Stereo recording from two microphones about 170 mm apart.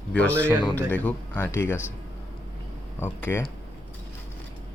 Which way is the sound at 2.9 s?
10° left (ahead or behind).